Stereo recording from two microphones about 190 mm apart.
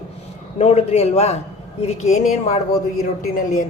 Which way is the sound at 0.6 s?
35° left (ahead or behind).